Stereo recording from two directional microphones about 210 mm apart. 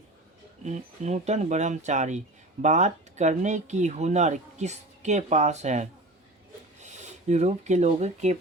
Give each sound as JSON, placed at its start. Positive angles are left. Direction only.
{"t": 0.6, "sound": "speech", "side_deg": -35}